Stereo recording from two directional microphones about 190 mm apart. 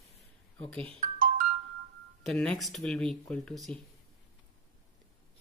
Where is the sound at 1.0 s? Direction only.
45° right (ahead or behind).